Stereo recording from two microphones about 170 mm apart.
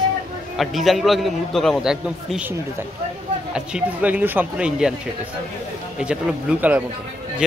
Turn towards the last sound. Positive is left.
turn(degrees=-10)  # may be behind; listen again after turning